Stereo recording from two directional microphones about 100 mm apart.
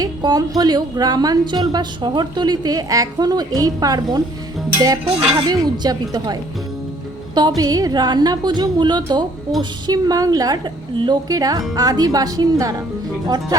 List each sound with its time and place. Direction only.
0.0 s speech: 40° right (ahead or behind)
5.0 s speech: 60° right (ahead or behind)
5.5 s a woman's voice: 45° right (ahead or behind)
7.3 s a woman's voice: 45° right (ahead or behind)
10.9 s a woman's voice: 50° right (ahead or behind)
11.3 s a woman's voice: 40° right (ahead or behind)